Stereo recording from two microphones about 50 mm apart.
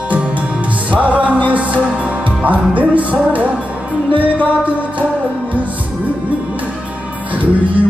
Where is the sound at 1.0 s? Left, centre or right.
Right.